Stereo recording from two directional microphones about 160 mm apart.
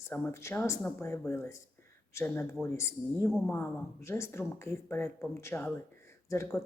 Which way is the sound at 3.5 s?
15° left (ahead or behind).